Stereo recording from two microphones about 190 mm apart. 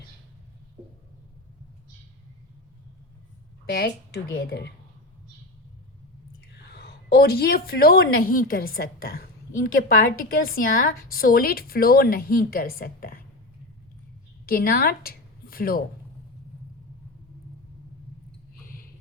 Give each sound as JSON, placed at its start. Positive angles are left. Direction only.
{"t": 3.7, "sound": "speech", "side_deg": 55}
{"t": 6.7, "sound": "a woman's voice", "side_deg": 55}
{"t": 14.4, "sound": "a woman's voice", "side_deg": 50}
{"t": 18.6, "sound": "a sound", "side_deg": 50}